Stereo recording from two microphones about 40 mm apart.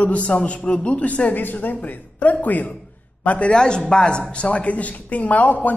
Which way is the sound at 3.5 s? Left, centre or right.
Left.